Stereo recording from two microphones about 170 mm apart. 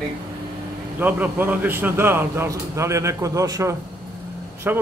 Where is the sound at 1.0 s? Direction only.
10° right (ahead or behind).